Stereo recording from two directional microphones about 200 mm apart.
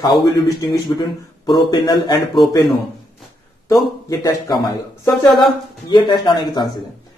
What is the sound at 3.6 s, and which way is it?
Speech, 15° left (ahead or behind).